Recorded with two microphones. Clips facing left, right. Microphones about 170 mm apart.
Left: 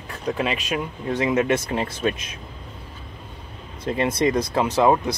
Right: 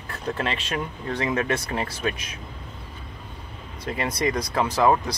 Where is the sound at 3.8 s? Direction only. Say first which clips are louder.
Left 5 dB; 25° left (ahead or behind).